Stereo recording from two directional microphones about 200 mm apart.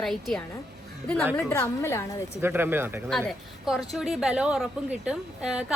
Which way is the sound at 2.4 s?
10° right (ahead or behind).